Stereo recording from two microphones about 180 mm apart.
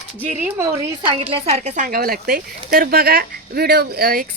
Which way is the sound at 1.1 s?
30° right (ahead or behind).